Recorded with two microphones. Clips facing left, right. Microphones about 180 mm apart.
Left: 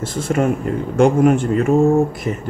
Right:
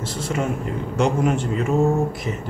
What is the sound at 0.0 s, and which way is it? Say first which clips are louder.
Speech: left 6 dB; 50° left (ahead or behind).